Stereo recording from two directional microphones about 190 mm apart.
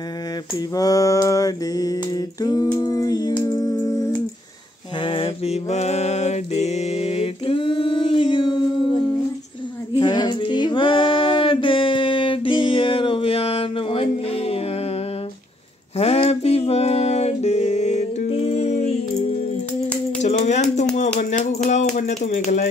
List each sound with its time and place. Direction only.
0.7 s a sound: 20° left (ahead or behind)
5.0 s mantra: 30° left (ahead or behind)
9.9 s female singing: 25° left (ahead or behind)
16.0 s music: 30° left (ahead or behind)
20.2 s a sound: 40° left (ahead or behind)
21.2 s speech: 40° left (ahead or behind)